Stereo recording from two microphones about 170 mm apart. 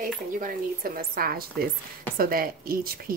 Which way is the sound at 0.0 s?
55° right (ahead or behind).